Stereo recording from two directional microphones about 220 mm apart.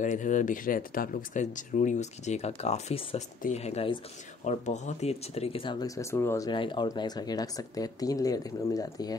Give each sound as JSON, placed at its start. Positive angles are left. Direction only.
{"t": 0.0, "sound": "speech", "side_deg": 35}